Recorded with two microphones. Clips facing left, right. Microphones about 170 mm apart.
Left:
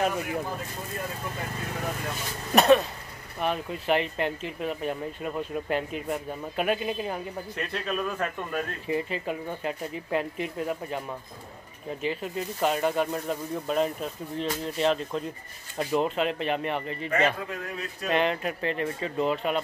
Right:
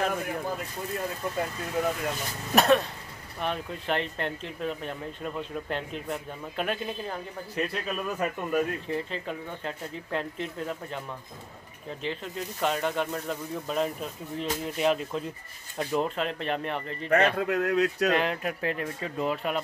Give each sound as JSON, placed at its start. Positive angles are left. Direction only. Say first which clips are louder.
{"t": 2.5, "sound": "speech", "louder": "left 3 dB", "side_deg": 0}
{"t": 7.5, "sound": "speech", "louder": "right 1 dB", "side_deg": -5}
{"t": 8.8, "sound": "speech", "louder": "left 3 dB", "side_deg": 10}
{"t": 12.0, "sound": "speech", "louder": "left 3 dB", "side_deg": 5}
{"t": 17.5, "sound": "speech", "louder": "right 10 dB", "side_deg": -70}
{"t": 18.1, "sound": "speech", "louder": "left 1 dB", "side_deg": 0}